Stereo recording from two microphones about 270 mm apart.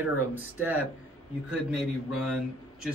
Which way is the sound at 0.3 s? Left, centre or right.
Centre.